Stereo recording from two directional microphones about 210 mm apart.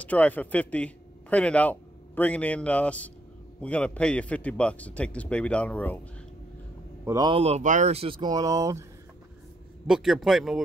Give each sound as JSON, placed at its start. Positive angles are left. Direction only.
{"t": 0.0, "sound": "a man's voice", "side_deg": 5}
{"t": 7.1, "sound": "speech", "side_deg": -20}
{"t": 9.8, "sound": "a man's voice", "side_deg": 0}